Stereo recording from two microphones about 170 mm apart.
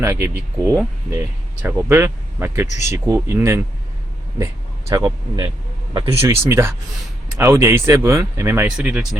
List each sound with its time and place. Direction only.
0.0 s speech: 15° right (ahead or behind)
2.6 s speech: 45° left (ahead or behind)
3.2 s speech: 15° right (ahead or behind)
4.9 s speech: 20° right (ahead or behind); by 9.0 s 5° right (ahead or behind)